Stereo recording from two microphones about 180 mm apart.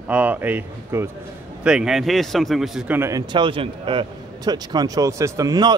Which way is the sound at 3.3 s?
30° right (ahead or behind).